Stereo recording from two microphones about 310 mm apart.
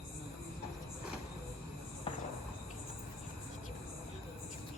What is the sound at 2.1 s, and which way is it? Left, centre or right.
Insect, centre.